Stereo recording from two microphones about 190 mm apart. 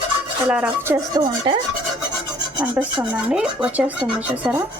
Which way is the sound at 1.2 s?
25° right (ahead or behind).